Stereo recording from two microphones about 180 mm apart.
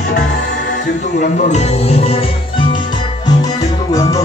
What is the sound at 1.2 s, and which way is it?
Music, 40° left (ahead or behind).